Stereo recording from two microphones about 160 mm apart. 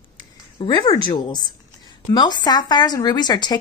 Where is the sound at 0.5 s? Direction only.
30° left (ahead or behind).